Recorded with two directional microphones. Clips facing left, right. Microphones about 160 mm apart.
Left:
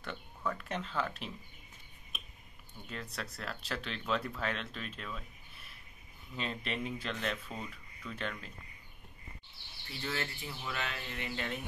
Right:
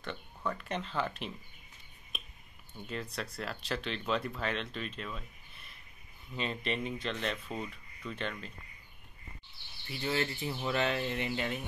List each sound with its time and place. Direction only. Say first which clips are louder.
0.0 s speech: right 1 dB; 5° left (ahead or behind)
2.1 s a sound: right 3 dB; centre (ahead or behind)
2.9 s speech: right 4 dB; centre (ahead or behind)
6.3 s speech: right 3 dB; centre (ahead or behind)
10.0 s speech: right 6 dB; 20° right (ahead or behind)